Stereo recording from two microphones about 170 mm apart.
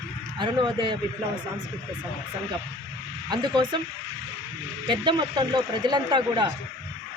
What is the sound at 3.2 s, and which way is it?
Speech, 25° right (ahead or behind).